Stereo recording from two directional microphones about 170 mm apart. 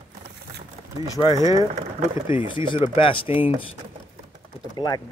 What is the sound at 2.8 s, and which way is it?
Speech, 35° left (ahead or behind).